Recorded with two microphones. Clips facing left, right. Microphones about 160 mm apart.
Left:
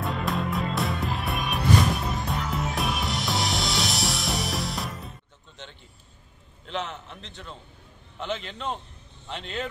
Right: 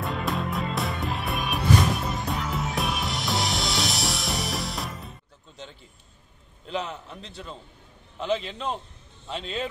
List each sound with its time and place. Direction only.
0.0 s music: centre (ahead or behind)
6.8 s a man's voice: 10° right (ahead or behind)